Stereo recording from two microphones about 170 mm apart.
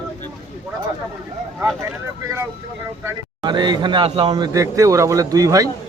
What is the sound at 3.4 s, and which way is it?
Speech, 25° right (ahead or behind).